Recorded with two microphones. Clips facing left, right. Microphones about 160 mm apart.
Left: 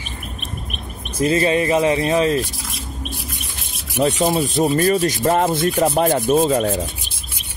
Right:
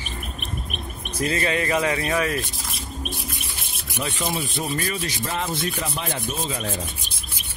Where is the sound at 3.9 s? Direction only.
35° left (ahead or behind).